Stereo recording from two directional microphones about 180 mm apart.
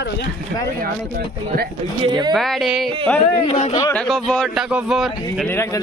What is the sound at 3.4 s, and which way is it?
Speech, 35° left (ahead or behind).